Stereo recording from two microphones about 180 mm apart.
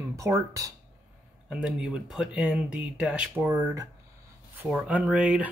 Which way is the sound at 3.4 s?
20° right (ahead or behind).